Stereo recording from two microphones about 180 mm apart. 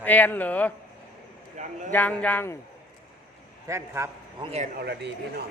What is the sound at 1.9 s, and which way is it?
Speech, 10° left (ahead or behind).